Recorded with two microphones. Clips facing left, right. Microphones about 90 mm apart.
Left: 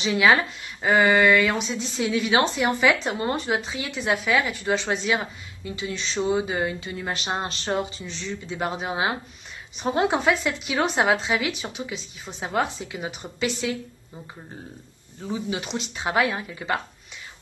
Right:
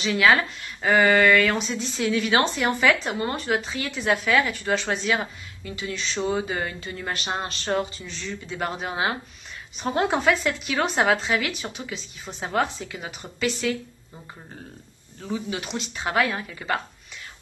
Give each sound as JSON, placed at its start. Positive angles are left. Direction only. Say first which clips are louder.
{"t": 0.0, "sound": "speech", "louder": "even", "side_deg": 15}
{"t": 3.0, "sound": "speech", "louder": "left 1 dB", "side_deg": 25}
{"t": 6.1, "sound": "speech", "louder": "left 2 dB", "side_deg": 10}
{"t": 15.2, "sound": "speech", "louder": "left 1 dB", "side_deg": 15}